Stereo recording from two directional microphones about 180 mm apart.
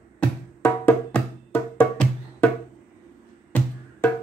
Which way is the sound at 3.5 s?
10° left (ahead or behind).